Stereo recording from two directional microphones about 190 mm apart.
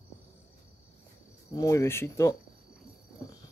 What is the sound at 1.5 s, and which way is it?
Speech, 15° left (ahead or behind).